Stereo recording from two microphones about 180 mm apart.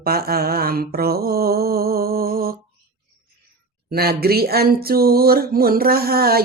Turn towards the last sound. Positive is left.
turn(degrees=-55)  # may be behind; listen again after turning